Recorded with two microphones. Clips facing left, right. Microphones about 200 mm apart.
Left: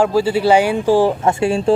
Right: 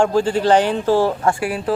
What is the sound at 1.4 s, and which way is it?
Speech, 25° left (ahead or behind).